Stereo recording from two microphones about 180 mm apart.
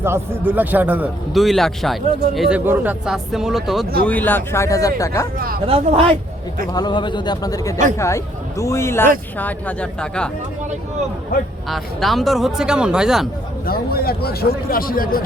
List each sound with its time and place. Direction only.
0.0 s a man's voice: 15° right (ahead or behind); by 5.3 s 20° left (ahead or behind)
5.6 s speech: 35° right (ahead or behind)
6.7 s a man's voice: 25° left (ahead or behind); by 10.2 s 5° left (ahead or behind)
11.7 s speech: centre (ahead or behind)
13.7 s a man's voice: 55° left (ahead or behind)